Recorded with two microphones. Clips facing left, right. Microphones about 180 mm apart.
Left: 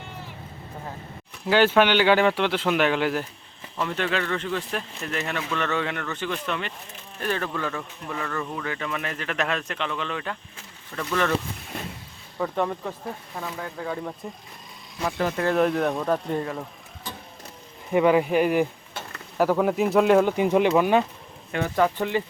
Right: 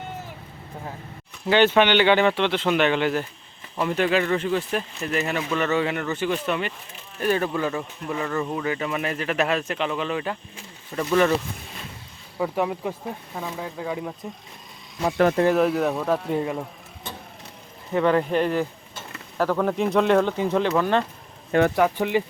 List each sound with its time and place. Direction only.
1.5 s speech: 5° left (ahead or behind)
3.8 s speech: 10° right (ahead or behind)
12.4 s speech: 10° right (ahead or behind)
15.5 s speech: 5° right (ahead or behind)
17.9 s speech: 10° left (ahead or behind)
21.8 s speech: 10° right (ahead or behind)